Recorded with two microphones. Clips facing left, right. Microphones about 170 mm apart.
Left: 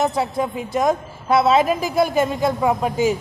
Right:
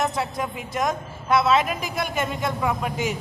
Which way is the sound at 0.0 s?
30° left (ahead or behind).